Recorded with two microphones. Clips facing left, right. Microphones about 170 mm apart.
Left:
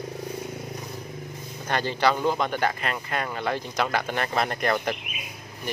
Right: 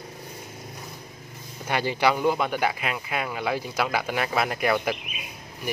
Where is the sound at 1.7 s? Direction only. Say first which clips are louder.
Even; 10° right (ahead or behind).